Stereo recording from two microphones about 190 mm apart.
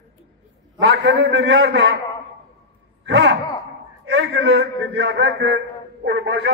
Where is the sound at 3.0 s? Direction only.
65° right (ahead or behind).